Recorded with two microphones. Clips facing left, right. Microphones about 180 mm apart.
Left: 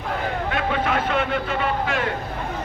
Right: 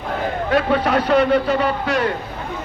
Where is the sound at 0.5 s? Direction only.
40° right (ahead or behind).